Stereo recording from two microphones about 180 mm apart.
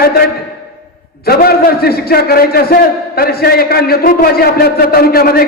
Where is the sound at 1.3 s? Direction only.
60° left (ahead or behind).